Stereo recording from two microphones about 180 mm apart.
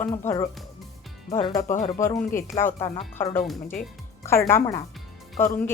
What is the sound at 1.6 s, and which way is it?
Speech, 45° left (ahead or behind).